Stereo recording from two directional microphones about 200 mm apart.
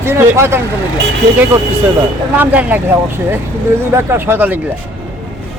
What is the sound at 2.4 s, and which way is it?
Speech, 10° right (ahead or behind).